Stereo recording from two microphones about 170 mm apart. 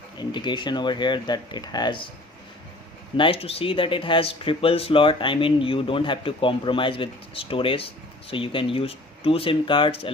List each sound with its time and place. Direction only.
0.2 s speech: 25° left (ahead or behind)
3.2 s speech: 30° left (ahead or behind)